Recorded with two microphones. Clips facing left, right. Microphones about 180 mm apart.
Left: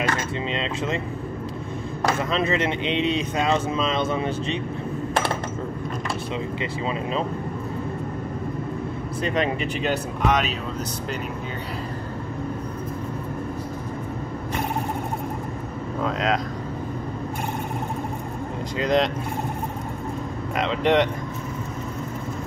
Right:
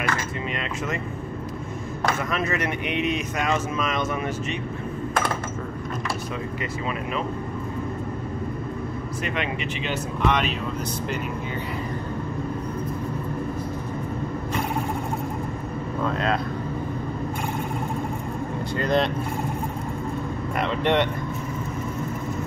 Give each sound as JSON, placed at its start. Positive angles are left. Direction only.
{"t": 2.3, "sound": "speech", "side_deg": 25}
{"t": 9.2, "sound": "speech", "side_deg": 35}
{"t": 18.8, "sound": "speech", "side_deg": 90}
{"t": 20.8, "sound": "speech", "side_deg": 90}